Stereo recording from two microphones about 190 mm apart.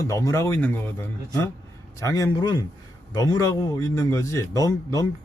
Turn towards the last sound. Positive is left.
turn(degrees=15)  # may be behind; listen again after turning